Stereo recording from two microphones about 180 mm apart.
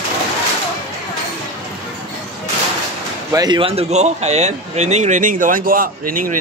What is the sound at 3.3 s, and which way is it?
Speech, 25° right (ahead or behind).